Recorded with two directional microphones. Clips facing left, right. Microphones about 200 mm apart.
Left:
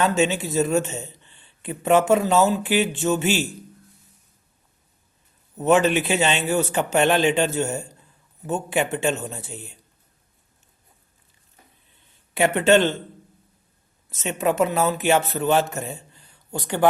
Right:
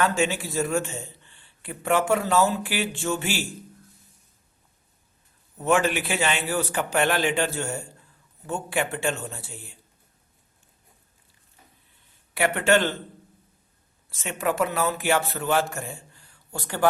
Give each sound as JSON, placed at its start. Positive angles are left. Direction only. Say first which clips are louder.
{"t": 0.0, "sound": "speech", "louder": "left 3 dB", "side_deg": 20}
{"t": 5.5, "sound": "speech", "louder": "left 4 dB", "side_deg": 20}
{"t": 12.3, "sound": "speech", "louder": "left 4 dB", "side_deg": 20}
{"t": 14.1, "sound": "speech", "louder": "left 4 dB", "side_deg": 20}